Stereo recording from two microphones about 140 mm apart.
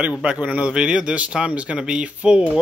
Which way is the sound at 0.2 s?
10° right (ahead or behind).